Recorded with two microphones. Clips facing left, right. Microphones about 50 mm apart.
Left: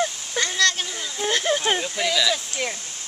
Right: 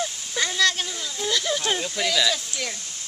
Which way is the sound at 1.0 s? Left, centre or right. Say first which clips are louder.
Left 2 dB; left.